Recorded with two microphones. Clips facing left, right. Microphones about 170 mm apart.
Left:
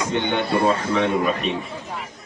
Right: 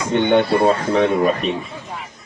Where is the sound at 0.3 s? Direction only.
45° right (ahead or behind).